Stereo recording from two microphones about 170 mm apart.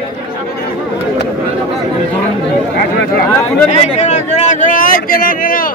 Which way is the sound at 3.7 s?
40° left (ahead or behind).